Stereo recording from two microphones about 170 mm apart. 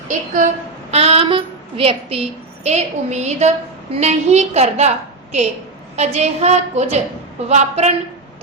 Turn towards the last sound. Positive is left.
turn(degrees=-40)  # may be behind; listen again after turning